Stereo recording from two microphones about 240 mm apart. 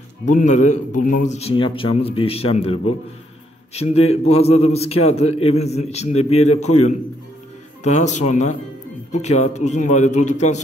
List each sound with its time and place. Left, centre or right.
0.3 s a man's voice: left
7.8 s a man's voice: left